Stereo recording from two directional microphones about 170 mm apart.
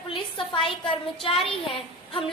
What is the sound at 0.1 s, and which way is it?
A woman's voice, 30° left (ahead or behind).